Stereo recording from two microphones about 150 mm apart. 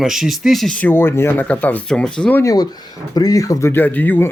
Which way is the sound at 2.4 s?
25° left (ahead or behind).